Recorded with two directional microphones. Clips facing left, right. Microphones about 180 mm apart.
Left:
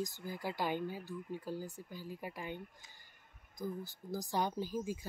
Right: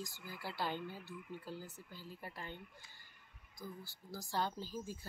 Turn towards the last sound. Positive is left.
turn(degrees=15)  # may be behind; listen again after turning